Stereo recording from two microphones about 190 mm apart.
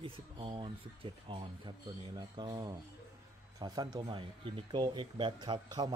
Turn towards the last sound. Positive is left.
turn(degrees=-20)  # may be behind; listen again after turning